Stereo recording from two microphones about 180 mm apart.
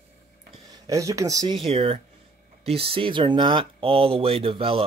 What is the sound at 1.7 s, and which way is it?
A man's voice, 30° right (ahead or behind).